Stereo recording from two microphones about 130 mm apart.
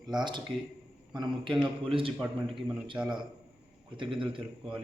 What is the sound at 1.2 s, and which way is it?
Speech, 40° right (ahead or behind).